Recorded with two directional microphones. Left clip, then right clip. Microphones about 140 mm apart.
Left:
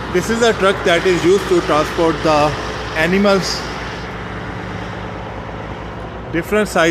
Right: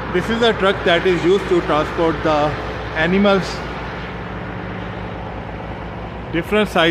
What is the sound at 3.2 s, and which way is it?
Speech, 5° left (ahead or behind).